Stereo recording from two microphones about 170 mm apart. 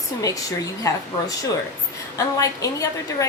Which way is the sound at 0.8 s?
20° left (ahead or behind).